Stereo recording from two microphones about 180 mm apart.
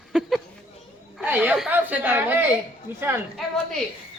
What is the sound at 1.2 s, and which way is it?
Speech, 5° right (ahead or behind).